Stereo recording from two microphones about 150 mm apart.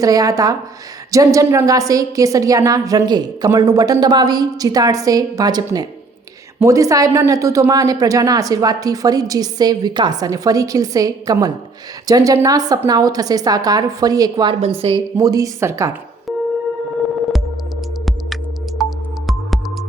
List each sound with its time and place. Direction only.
0.0 s a woman's voice: 25° right (ahead or behind)
14.6 s a woman's voice: 40° right (ahead or behind)
15.2 s a woman's voice: 25° right (ahead or behind)
18.8 s music: centre (ahead or behind)